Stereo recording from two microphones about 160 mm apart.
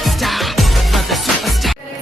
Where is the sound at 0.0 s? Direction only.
Centre (ahead or behind).